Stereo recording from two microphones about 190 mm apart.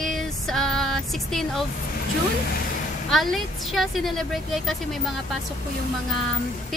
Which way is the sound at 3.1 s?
Centre (ahead or behind).